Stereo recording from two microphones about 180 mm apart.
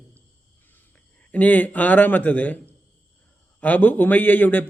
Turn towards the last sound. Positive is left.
turn(degrees=10)  # may be behind; listen again after turning